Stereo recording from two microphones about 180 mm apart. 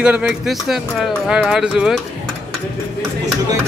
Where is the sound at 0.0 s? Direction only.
5° right (ahead or behind).